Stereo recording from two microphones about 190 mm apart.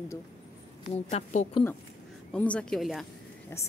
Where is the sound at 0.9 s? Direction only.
35° left (ahead or behind).